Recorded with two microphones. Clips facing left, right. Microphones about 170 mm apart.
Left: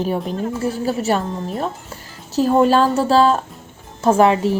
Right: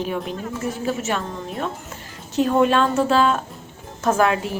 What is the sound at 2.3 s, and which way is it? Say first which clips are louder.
A woman's voice: left 3 dB; 35° left (ahead or behind).